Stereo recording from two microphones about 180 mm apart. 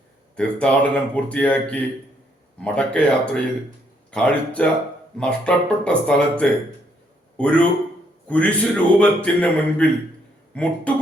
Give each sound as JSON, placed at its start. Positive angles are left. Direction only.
{"t": 0.3, "sound": "speech", "side_deg": 5}